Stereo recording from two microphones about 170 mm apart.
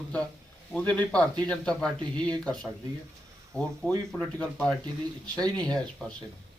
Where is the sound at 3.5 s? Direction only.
10° left (ahead or behind).